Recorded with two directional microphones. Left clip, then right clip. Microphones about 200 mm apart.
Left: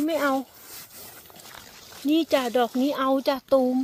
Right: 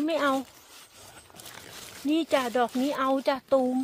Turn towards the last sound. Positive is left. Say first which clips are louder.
# left 3 dB
turn(degrees=35)  # may be behind; listen again after turning